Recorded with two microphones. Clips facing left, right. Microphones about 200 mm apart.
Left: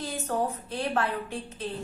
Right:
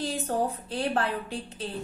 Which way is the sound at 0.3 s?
30° right (ahead or behind).